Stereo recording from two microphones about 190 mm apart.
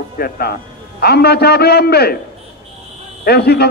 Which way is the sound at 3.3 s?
55° left (ahead or behind).